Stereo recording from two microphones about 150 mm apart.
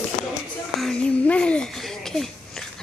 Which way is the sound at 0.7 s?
5° left (ahead or behind).